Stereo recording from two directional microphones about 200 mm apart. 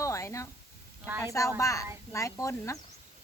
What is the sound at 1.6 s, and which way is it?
Speech, 15° left (ahead or behind).